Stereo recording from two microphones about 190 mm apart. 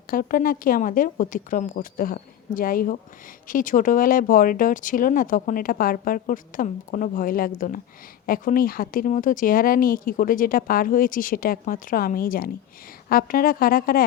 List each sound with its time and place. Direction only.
0.1 s speech: 50° left (ahead or behind)